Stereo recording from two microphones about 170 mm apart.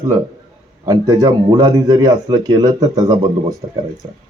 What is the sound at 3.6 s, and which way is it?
Speech, 35° right (ahead or behind).